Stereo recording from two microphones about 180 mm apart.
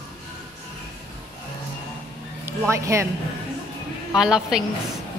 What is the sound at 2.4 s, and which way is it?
Speech, 15° right (ahead or behind).